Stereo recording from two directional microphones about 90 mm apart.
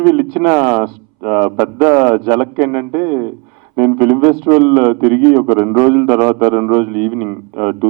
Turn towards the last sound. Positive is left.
turn(degrees=-15)  # may be behind; listen again after turning